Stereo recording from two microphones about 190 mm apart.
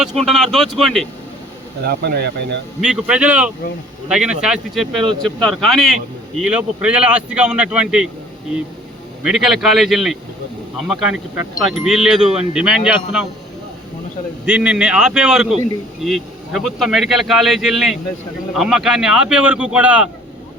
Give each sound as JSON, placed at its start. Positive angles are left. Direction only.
{"t": 0.0, "sound": "a man's voice", "side_deg": 0}
{"t": 1.8, "sound": "speech", "side_deg": -55}
{"t": 2.8, "sound": "a man's voice", "side_deg": -5}
{"t": 9.2, "sound": "a man's voice", "side_deg": -5}
{"t": 14.4, "sound": "a man's voice", "side_deg": -5}